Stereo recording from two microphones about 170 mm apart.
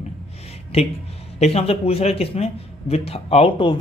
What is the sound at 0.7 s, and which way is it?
A man's voice, 35° left (ahead or behind).